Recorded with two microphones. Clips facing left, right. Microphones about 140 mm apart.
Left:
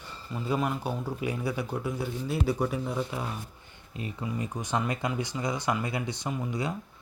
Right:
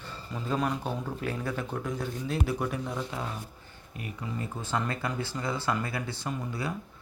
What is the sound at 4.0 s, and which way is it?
Speech, 20° left (ahead or behind).